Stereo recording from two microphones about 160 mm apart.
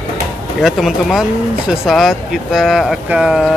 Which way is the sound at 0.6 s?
Centre (ahead or behind).